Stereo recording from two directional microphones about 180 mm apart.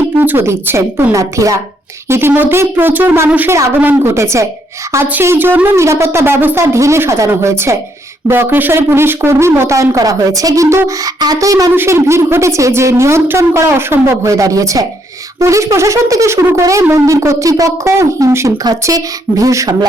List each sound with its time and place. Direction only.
0.2 s speech: 10° right (ahead or behind)